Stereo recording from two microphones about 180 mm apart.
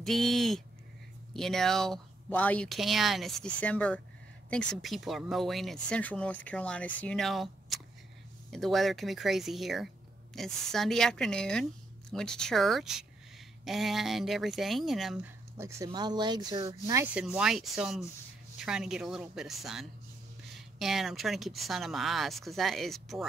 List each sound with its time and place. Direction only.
0.0 s speech: centre (ahead or behind)
15.5 s speech: 15° right (ahead or behind)
16.8 s rub: 15° right (ahead or behind)
17.1 s speech: 5° right (ahead or behind)